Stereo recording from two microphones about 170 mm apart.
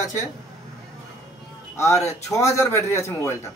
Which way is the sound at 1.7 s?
15° left (ahead or behind).